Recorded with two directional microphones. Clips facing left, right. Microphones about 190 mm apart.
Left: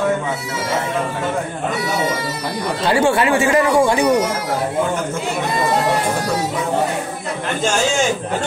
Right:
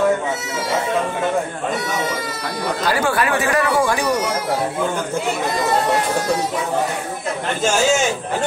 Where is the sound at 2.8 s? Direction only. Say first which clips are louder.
Left 5 dB; 25° left (ahead or behind).